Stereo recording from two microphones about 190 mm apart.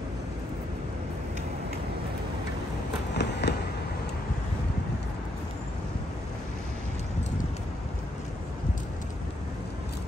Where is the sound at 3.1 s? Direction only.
65° left (ahead or behind).